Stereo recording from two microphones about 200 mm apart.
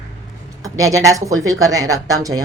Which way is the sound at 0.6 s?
15° right (ahead or behind).